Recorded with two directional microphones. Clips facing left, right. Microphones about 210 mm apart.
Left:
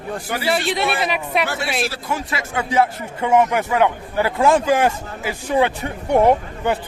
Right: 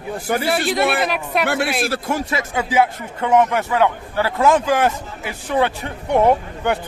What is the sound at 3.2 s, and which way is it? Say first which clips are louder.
A man's voice: even; 10° left (ahead or behind).